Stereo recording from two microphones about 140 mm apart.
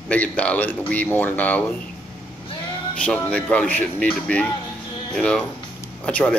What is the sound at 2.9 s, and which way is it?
Speech, 10° left (ahead or behind).